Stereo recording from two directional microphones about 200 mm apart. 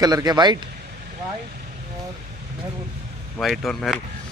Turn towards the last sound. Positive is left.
turn(degrees=0)  # may be behind; listen again after turning